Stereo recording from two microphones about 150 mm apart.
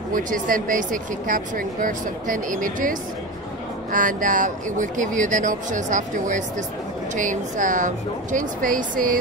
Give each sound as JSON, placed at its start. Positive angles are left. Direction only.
{"t": 0.1, "sound": "speech", "side_deg": -65}